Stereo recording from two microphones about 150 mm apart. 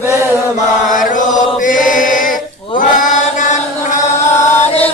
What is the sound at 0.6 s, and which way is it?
Chant, 60° left (ahead or behind).